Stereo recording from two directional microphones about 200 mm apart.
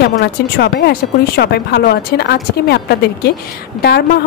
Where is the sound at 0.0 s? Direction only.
55° left (ahead or behind).